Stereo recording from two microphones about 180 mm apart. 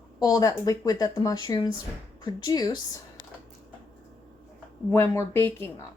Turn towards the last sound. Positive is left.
turn(degrees=10)  # may be behind; listen again after turning